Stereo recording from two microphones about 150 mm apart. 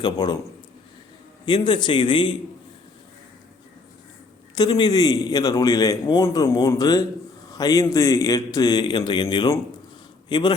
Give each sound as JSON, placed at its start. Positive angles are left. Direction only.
{"t": 0.0, "sound": "a man's voice", "side_deg": 30}
{"t": 1.5, "sound": "a man's voice", "side_deg": 30}
{"t": 4.5, "sound": "a man's voice", "side_deg": 30}